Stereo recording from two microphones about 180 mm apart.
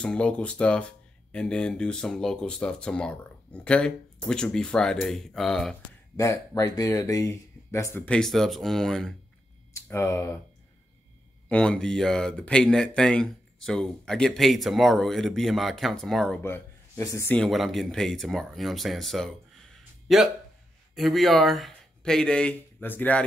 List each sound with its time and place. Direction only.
0.0 s speech: 5° left (ahead or behind)
6.1 s speech: 20° left (ahead or behind); by 9.1 s 5° left (ahead or behind)
9.8 s speech: 15° left (ahead or behind)
11.4 s speech: 5° left (ahead or behind)
16.4 s speech: 15° left (ahead or behind)
17.4 s speech: centre (ahead or behind)
19.8 s a sound: centre (ahead or behind)
20.9 s speech: centre (ahead or behind)